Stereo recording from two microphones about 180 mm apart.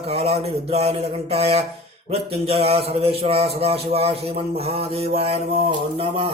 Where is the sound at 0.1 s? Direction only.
35° right (ahead or behind).